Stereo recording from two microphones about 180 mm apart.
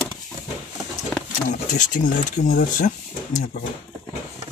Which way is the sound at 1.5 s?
45° left (ahead or behind).